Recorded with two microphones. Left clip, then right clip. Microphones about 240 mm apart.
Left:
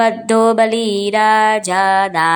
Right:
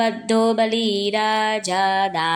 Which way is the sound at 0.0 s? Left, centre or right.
Centre.